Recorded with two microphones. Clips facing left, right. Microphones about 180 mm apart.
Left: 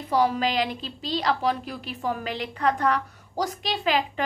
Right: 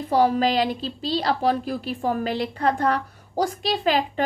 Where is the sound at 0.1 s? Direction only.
40° right (ahead or behind).